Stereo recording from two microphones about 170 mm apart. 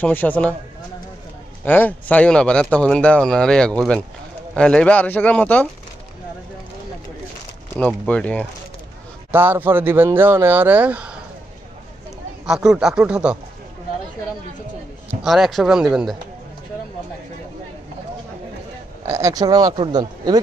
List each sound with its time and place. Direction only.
0.0 s speech: 10° left (ahead or behind)
1.6 s speech: 10° left (ahead or behind)
7.8 s speech: 5° left (ahead or behind)
9.3 s speech: 10° right (ahead or behind)
12.4 s speech: 5° right (ahead or behind)
15.2 s speech: centre (ahead or behind)
19.0 s speech: 15° right (ahead or behind)